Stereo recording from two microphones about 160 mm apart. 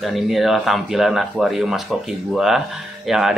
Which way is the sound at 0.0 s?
Centre (ahead or behind).